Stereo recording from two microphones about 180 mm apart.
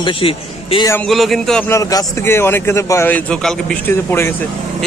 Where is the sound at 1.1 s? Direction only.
Centre (ahead or behind).